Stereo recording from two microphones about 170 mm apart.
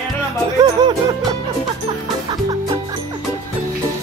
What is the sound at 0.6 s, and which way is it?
Music, 25° right (ahead or behind).